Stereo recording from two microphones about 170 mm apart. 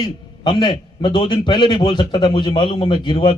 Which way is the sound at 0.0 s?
30° left (ahead or behind).